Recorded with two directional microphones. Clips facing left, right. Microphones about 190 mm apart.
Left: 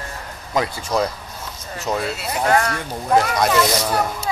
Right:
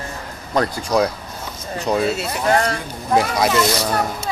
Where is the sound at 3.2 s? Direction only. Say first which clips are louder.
Right 1 dB; 5° right (ahead or behind).